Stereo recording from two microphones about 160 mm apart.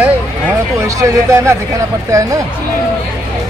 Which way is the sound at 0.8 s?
20° right (ahead or behind).